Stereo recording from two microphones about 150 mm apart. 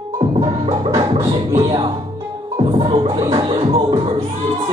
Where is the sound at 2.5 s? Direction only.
35° right (ahead or behind).